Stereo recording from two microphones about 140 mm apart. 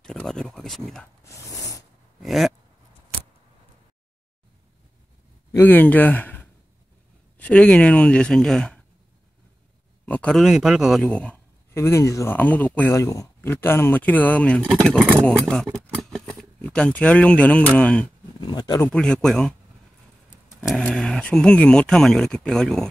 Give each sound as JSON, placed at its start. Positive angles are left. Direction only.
{"t": 0.0, "sound": "speech", "side_deg": 5}
{"t": 1.2, "sound": "a sound", "side_deg": 25}
{"t": 2.2, "sound": "speech", "side_deg": 0}
{"t": 5.5, "sound": "speech", "side_deg": 15}
{"t": 10.0, "sound": "speech", "side_deg": 10}
{"t": 10.4, "sound": "speech", "side_deg": -5}
{"t": 12.9, "sound": "speech", "side_deg": 25}
{"t": 18.4, "sound": "speech", "side_deg": 30}
{"t": 18.8, "sound": "speech", "side_deg": 10}
{"t": 20.6, "sound": "speech", "side_deg": 5}